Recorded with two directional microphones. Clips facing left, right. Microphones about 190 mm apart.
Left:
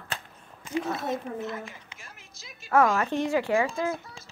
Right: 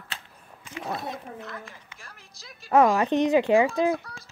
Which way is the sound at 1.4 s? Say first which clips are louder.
Left 5 dB; 20° left (ahead or behind).